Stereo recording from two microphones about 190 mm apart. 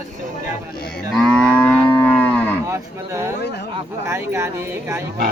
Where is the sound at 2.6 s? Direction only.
15° right (ahead or behind).